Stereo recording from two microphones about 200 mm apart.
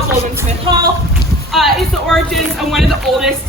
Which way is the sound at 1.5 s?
Centre (ahead or behind).